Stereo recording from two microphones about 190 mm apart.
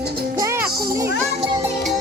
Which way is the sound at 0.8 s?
15° right (ahead or behind).